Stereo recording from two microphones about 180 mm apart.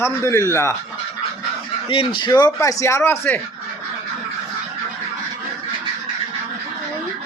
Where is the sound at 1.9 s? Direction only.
25° left (ahead or behind); by 3.4 s 10° left (ahead or behind).